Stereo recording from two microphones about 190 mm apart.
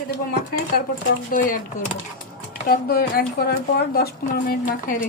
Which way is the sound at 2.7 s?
50° left (ahead or behind).